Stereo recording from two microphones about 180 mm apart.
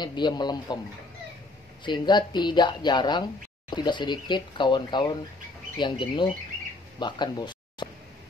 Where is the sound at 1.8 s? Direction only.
25° left (ahead or behind).